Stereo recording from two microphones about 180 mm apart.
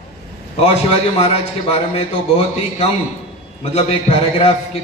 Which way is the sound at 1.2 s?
40° left (ahead or behind).